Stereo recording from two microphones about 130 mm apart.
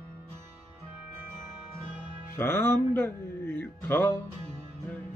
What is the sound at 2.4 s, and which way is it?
Speech, 15° left (ahead or behind).